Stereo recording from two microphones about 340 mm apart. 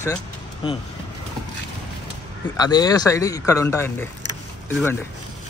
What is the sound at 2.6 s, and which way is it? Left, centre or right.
Speech, centre.